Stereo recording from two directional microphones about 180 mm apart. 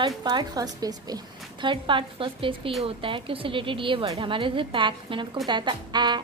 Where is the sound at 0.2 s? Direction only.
25° right (ahead or behind).